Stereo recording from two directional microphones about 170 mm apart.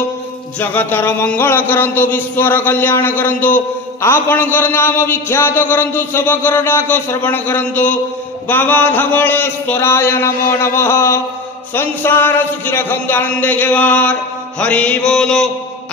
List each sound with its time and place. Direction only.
0.6 s music: 10° left (ahead or behind)